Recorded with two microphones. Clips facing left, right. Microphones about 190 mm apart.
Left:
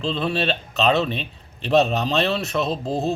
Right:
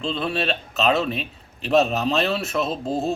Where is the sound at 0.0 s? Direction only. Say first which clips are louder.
Left 2 dB; centre (ahead or behind).